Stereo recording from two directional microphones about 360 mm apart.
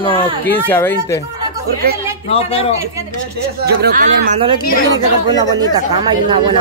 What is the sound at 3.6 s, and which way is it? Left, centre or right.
Speech, right.